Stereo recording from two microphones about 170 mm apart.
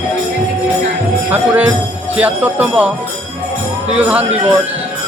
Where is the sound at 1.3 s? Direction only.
10° right (ahead or behind).